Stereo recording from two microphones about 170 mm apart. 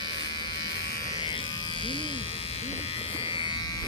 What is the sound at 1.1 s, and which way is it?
Electric shaver, 30° left (ahead or behind).